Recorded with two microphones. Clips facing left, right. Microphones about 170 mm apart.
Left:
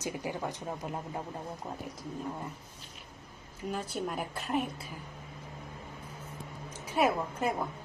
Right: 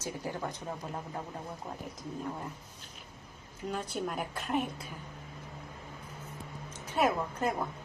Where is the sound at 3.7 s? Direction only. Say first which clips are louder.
Even; centre (ahead or behind).